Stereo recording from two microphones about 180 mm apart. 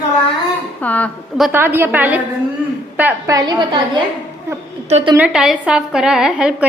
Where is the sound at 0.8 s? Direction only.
10° left (ahead or behind).